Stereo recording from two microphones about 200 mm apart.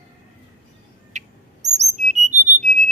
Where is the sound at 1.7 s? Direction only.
35° right (ahead or behind).